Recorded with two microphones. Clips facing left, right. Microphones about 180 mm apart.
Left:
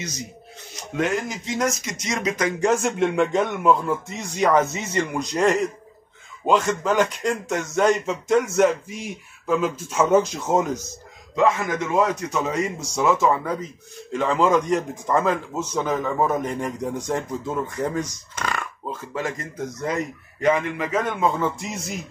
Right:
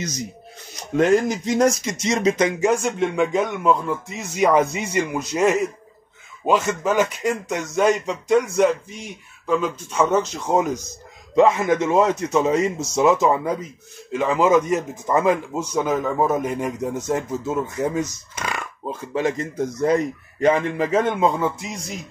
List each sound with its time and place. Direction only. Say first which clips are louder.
0.9 s a man's voice: right 7 dB; 35° right (ahead or behind)
2.6 s speech: even; centre (ahead or behind)
11.3 s a man's voice: right 5 dB; 20° right (ahead or behind)
20.3 s a man's voice: right 3 dB; 35° right (ahead or behind)
21.4 s speech: right 1 dB; centre (ahead or behind)